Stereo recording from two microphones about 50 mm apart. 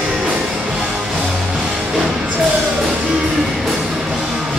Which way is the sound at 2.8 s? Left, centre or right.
Centre.